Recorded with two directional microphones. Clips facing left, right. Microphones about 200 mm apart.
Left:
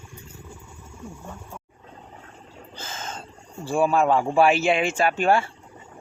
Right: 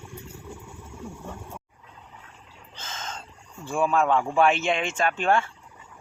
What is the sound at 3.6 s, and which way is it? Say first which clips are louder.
Speech: left 4 dB; 30° left (ahead or behind).